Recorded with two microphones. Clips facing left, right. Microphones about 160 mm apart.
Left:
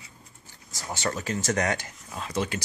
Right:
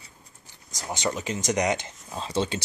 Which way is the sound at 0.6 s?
15° right (ahead or behind).